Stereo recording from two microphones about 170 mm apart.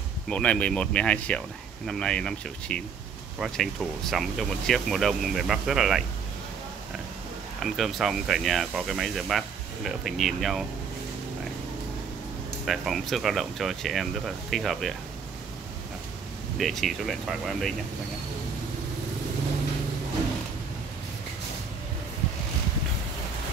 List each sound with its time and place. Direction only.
0.3 s speech: 5° left (ahead or behind)
7.6 s speech: centre (ahead or behind)
12.6 s speech: centre (ahead or behind)
16.5 s speech: centre (ahead or behind)